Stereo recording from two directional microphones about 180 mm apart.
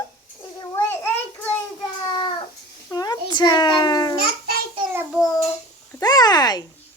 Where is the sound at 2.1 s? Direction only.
25° left (ahead or behind).